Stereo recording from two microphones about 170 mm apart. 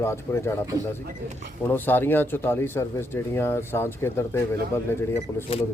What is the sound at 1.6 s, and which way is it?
A man's voice, 10° left (ahead or behind).